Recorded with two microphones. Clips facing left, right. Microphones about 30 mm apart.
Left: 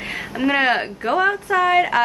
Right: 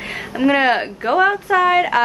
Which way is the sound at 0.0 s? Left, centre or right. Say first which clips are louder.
Right 3 dB; centre.